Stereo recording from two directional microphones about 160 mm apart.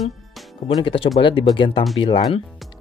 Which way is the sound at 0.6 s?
30° left (ahead or behind).